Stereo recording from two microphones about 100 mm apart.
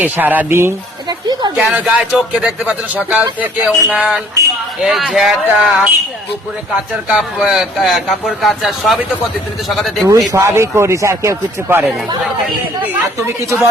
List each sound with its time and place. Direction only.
0.0 s speech: 15° right (ahead or behind)
1.0 s a sound: 45° right (ahead or behind)
1.5 s speech: 10° right (ahead or behind)
7.1 s speech: 10° right (ahead or behind)
10.1 s speech: 30° right (ahead or behind)
13.4 s speech: 30° right (ahead or behind)